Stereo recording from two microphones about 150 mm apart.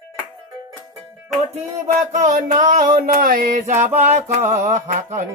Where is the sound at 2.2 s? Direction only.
60° right (ahead or behind).